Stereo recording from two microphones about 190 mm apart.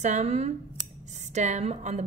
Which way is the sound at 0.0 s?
40° right (ahead or behind).